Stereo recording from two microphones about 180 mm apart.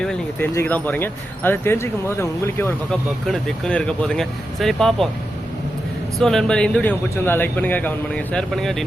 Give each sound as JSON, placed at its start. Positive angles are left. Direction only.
{"t": 0.0, "sound": "a sound", "side_deg": 5}
{"t": 0.5, "sound": "a man's voice", "side_deg": 10}
{"t": 3.2, "sound": "speech", "side_deg": 0}
{"t": 6.1, "sound": "a man's voice", "side_deg": 0}